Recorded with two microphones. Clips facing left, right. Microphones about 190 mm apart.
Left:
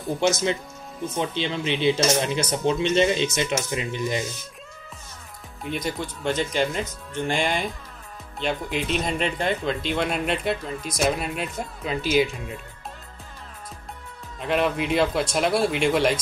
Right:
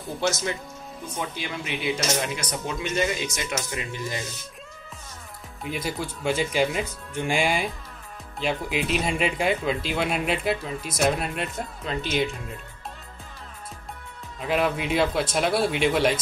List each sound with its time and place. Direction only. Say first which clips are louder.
0.2 s speech: left 3 dB; 20° left (ahead or behind)
5.6 s speech: left 1 dB; 5° right (ahead or behind)
14.4 s speech: left 1 dB; centre (ahead or behind)